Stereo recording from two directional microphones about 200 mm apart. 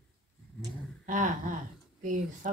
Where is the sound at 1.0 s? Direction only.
40° right (ahead or behind).